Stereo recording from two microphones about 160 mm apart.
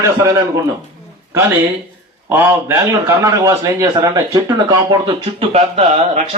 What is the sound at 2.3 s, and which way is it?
A man's voice, 15° right (ahead or behind).